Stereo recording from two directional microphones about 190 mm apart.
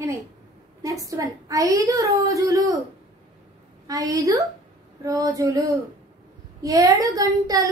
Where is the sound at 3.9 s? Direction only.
20° right (ahead or behind).